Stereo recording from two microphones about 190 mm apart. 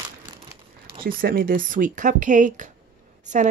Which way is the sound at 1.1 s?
50° right (ahead or behind).